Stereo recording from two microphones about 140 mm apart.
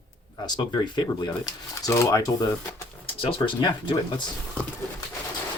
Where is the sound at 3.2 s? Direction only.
40° left (ahead or behind).